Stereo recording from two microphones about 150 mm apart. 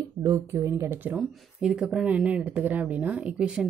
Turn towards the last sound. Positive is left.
turn(degrees=-5)  # may be behind; listen again after turning